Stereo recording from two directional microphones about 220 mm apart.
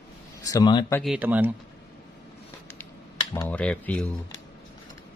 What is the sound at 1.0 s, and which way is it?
Speech, 5° right (ahead or behind).